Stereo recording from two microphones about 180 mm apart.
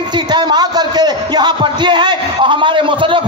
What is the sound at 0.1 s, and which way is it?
Speech, 25° right (ahead or behind).